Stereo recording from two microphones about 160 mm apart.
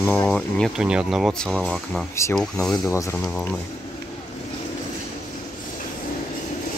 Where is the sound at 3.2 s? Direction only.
5° left (ahead or behind).